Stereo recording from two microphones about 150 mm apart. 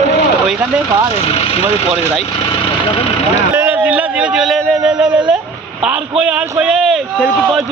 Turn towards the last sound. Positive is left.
turn(degrees=-5)  # may be behind; listen again after turning